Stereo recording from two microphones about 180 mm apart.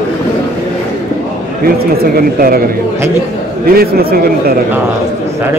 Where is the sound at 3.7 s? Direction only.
55° right (ahead or behind).